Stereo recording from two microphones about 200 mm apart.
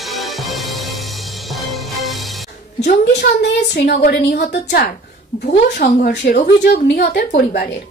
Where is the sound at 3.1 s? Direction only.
55° left (ahead or behind).